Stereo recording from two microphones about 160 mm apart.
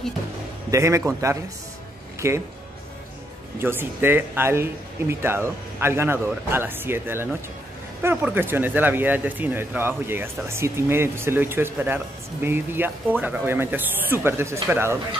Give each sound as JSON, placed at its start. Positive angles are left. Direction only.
{"t": 0.7, "sound": "a man's voice", "side_deg": -20}
{"t": 3.6, "sound": "speech", "side_deg": -15}